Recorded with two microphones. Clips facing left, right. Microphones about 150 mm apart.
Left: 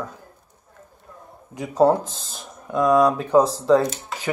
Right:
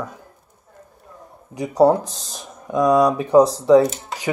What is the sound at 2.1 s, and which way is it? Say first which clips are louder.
Speech: right 1 dB; 80° right.